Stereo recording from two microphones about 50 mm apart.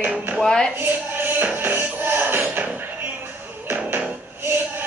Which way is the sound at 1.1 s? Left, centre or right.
Right.